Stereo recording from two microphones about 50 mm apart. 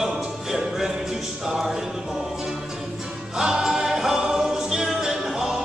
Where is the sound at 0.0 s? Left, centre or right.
Centre.